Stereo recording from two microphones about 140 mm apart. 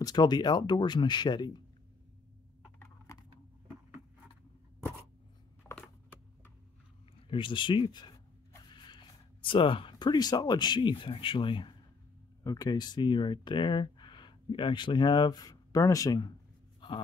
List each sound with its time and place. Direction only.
0.0 s speech: 30° left (ahead or behind)
2.8 s computer keyboard: 20° left (ahead or behind)
7.2 s speech: 35° left (ahead or behind)
16.8 s a sound: 35° left (ahead or behind)